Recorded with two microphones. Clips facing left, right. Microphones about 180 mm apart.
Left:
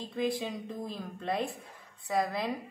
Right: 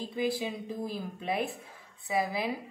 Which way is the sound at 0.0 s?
5° right (ahead or behind).